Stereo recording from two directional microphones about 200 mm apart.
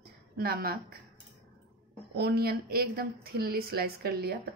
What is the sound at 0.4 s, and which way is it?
Speech, 50° right (ahead or behind).